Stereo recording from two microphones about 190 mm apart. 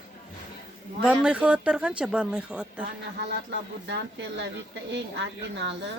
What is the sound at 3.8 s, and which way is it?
Speech, 65° right (ahead or behind).